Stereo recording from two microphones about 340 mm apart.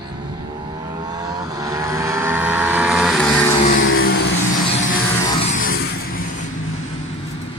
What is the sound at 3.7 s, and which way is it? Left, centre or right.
Vehicle, left.